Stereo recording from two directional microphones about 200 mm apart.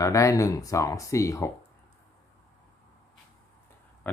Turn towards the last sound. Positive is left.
turn(degrees=10)  # may be behind; listen again after turning